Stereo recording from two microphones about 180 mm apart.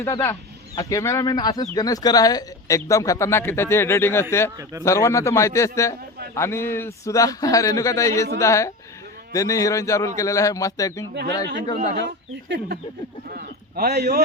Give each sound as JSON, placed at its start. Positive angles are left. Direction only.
{"t": 0.0, "sound": "speech", "side_deg": 15}
{"t": 12.5, "sound": "speech", "side_deg": -70}
{"t": 13.3, "sound": "speech", "side_deg": -60}